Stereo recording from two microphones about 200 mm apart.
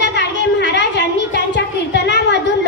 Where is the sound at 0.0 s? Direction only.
60° left (ahead or behind).